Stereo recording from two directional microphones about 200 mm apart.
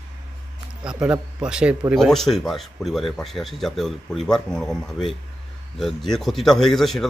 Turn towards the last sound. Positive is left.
turn(degrees=0)  # may be behind; listen again after turning